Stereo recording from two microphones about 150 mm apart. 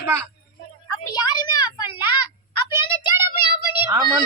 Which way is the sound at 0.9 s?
25° left (ahead or behind).